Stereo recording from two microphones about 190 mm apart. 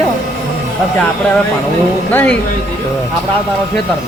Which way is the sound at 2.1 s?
10° left (ahead or behind).